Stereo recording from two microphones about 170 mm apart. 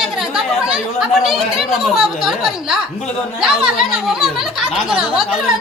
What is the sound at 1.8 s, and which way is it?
A woman's voice, 5° right (ahead or behind).